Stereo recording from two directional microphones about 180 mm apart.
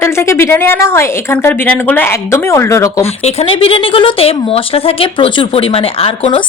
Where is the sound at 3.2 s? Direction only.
30° left (ahead or behind).